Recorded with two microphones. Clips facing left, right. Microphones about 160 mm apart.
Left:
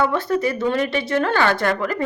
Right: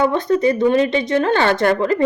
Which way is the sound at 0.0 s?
20° right (ahead or behind).